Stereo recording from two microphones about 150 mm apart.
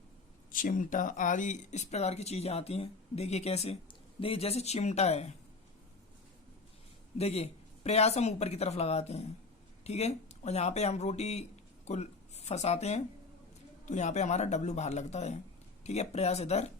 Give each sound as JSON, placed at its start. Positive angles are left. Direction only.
{"t": 0.5, "sound": "speech", "side_deg": 60}
{"t": 7.2, "sound": "speech", "side_deg": 45}